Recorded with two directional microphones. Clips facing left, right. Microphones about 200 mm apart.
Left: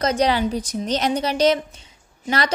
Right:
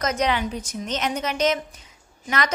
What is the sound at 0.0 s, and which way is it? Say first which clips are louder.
A woman's voice: left 4 dB; 35° left (ahead or behind).